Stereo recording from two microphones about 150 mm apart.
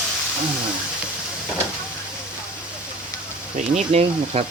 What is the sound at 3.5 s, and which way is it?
Speech, 50° right (ahead or behind).